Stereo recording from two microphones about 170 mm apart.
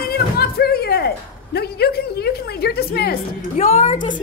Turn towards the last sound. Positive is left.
turn(degrees=50)  # may be behind; listen again after turning